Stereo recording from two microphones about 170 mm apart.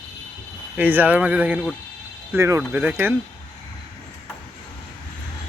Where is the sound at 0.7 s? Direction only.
10° right (ahead or behind).